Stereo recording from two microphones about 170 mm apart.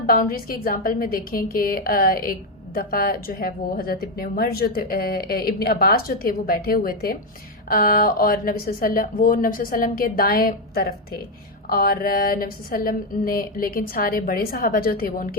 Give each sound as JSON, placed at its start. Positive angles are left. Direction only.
{"t": 0.0, "sound": "a woman's voice", "side_deg": 60}